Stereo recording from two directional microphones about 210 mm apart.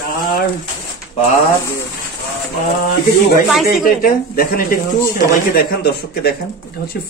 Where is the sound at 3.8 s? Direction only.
45° left (ahead or behind).